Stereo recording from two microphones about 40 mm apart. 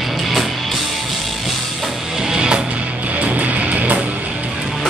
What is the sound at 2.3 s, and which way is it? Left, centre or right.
Music, right.